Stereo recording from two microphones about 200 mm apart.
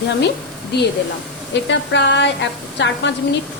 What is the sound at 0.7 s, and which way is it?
A woman's voice, 55° left (ahead or behind).